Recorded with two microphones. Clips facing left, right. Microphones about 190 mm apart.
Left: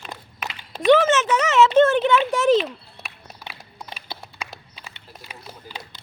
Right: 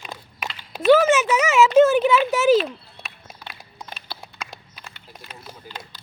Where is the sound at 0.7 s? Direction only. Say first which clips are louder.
Right 1 dB; 5° right (ahead or behind).